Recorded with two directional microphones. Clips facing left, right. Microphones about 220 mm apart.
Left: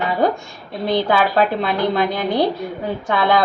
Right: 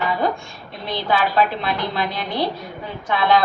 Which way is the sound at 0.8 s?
45° left (ahead or behind).